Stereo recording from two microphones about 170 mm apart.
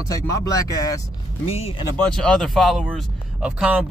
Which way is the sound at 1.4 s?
35° left (ahead or behind).